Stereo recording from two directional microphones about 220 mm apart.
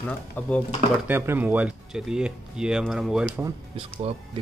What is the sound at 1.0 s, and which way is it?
Speech, 10° right (ahead or behind).